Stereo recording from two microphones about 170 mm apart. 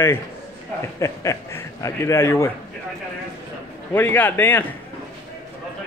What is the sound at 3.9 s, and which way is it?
Speech, 10° left (ahead or behind).